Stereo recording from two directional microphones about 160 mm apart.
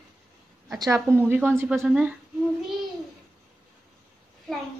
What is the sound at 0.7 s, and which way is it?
A woman's voice, 20° right (ahead or behind).